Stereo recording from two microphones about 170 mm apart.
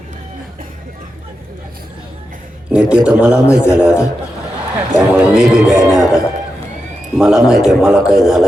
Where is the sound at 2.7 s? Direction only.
5° right (ahead or behind).